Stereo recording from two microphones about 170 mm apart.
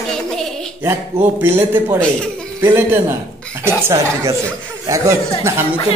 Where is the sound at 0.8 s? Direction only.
15° right (ahead or behind).